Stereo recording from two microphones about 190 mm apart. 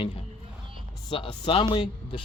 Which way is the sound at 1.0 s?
25° left (ahead or behind).